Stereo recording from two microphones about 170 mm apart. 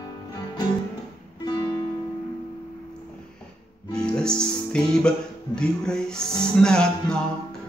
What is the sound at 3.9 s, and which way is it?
Speech, 5° left (ahead or behind).